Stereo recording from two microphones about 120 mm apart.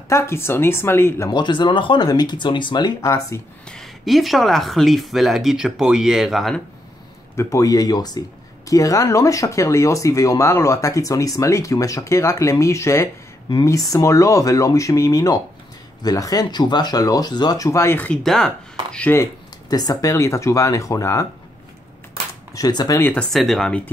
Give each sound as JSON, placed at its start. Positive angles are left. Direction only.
{"t": 0.1, "sound": "speech", "side_deg": 20}
{"t": 1.3, "sound": "speech", "side_deg": 40}
{"t": 3.6, "sound": "speech", "side_deg": 5}
{"t": 7.3, "sound": "speech", "side_deg": 25}
{"t": 19.7, "sound": "speech", "side_deg": 30}
{"t": 22.5, "sound": "speech", "side_deg": 35}
{"t": 22.9, "sound": "speech", "side_deg": 15}
{"t": 23.3, "sound": "speech", "side_deg": 0}